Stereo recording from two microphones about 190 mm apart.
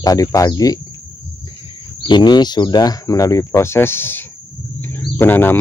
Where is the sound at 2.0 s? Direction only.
25° left (ahead or behind).